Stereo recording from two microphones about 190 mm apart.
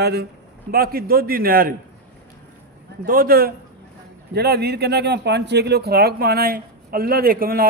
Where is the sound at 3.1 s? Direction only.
50° right (ahead or behind).